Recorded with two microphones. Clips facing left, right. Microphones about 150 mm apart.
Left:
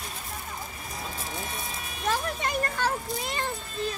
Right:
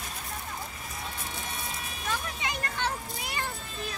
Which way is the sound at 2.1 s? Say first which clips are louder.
Left 6 dB; 45° left (ahead or behind).